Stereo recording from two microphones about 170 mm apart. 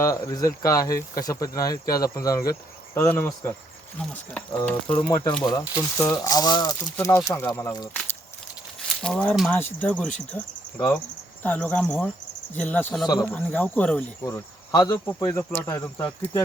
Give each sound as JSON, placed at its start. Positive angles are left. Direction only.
{"t": 0.0, "sound": "speech", "side_deg": 20}
{"t": 5.0, "sound": "speech", "side_deg": 25}
{"t": 9.0, "sound": "speech", "side_deg": 5}
{"t": 10.3, "sound": "cricket", "side_deg": 15}
{"t": 11.4, "sound": "speech", "side_deg": 10}